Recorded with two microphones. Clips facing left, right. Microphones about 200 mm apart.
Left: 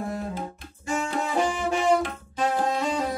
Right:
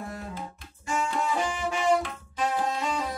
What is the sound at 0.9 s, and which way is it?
Music, 55° left (ahead or behind).